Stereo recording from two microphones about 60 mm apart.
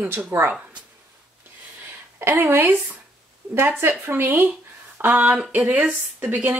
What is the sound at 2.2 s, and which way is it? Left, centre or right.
Speech, right.